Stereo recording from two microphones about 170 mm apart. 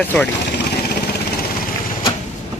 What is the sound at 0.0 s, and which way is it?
Speech, 10° left (ahead or behind).